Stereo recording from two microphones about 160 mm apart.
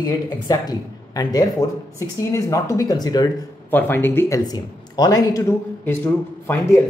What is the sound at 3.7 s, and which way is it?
Speech, 15° left (ahead or behind).